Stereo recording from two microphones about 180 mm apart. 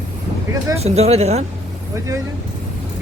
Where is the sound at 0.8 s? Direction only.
35° right (ahead or behind).